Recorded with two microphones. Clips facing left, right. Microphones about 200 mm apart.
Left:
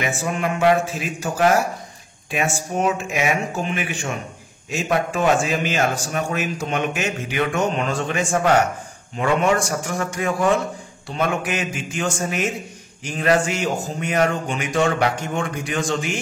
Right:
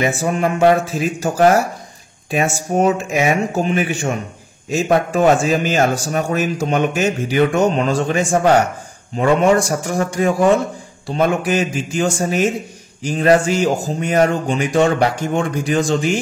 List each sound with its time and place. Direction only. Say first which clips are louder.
0.0 s a man's voice: right 6 dB; 40° right (ahead or behind)